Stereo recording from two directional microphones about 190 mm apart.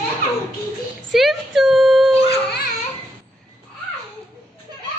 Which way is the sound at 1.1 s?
Centre (ahead or behind).